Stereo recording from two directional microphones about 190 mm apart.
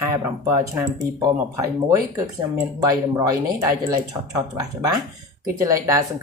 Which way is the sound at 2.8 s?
20° right (ahead or behind).